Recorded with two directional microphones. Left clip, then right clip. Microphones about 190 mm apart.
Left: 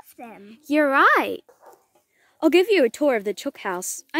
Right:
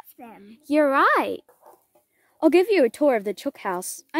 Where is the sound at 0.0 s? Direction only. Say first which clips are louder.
Left 3 dB; 40° left (ahead or behind).